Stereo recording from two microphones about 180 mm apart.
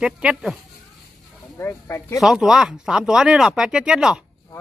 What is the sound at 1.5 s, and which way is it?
Speech, 15° left (ahead or behind).